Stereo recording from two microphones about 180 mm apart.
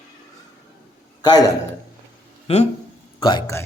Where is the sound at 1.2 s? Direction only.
20° left (ahead or behind).